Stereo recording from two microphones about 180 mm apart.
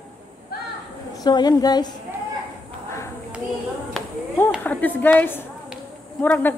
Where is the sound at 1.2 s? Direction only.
20° left (ahead or behind).